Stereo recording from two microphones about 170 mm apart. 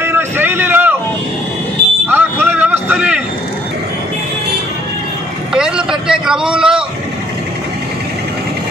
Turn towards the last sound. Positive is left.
turn(degrees=-5)  # may be behind; listen again after turning